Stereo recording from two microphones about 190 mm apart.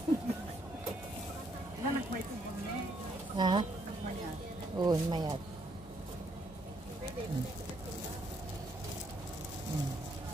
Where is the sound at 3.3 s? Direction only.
25° right (ahead or behind).